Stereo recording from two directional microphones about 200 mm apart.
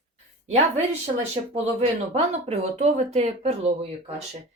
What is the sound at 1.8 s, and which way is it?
Speech, 30° right (ahead or behind).